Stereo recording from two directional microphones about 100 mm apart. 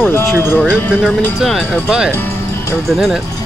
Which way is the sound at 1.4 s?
Centre (ahead or behind).